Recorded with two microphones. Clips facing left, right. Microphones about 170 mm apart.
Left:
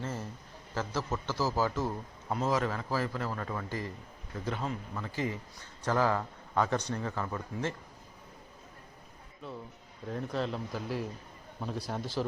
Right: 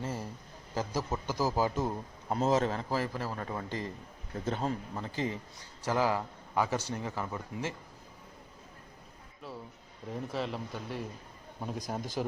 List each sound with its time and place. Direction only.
0.0 s a sound: 10° right (ahead or behind)
0.7 s a man's voice: 15° right (ahead or behind)
4.4 s a man's voice: 35° right (ahead or behind); by 7.7 s 10° right (ahead or behind)
10.1 s speech: 5° right (ahead or behind)
11.9 s a man's voice: 15° right (ahead or behind)